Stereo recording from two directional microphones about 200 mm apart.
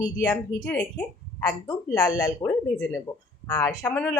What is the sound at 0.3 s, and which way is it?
A woman's voice, 10° left (ahead or behind).